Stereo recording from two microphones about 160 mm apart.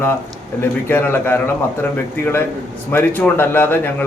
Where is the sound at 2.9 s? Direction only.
10° left (ahead or behind).